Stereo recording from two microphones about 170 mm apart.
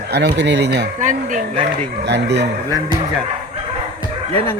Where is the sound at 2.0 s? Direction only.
85° right.